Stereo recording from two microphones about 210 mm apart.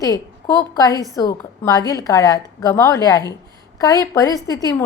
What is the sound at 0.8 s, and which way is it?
A woman's voice, 15° left (ahead or behind).